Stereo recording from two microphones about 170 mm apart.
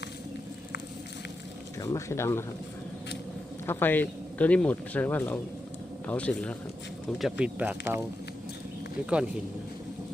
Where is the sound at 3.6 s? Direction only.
10° left (ahead or behind); by 7.7 s 10° right (ahead or behind).